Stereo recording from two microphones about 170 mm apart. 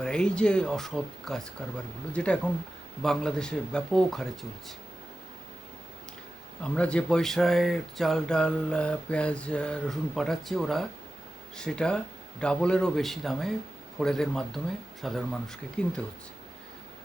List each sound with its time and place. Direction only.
0.0 s speech: 5° left (ahead or behind)
6.6 s speech: 5° left (ahead or behind)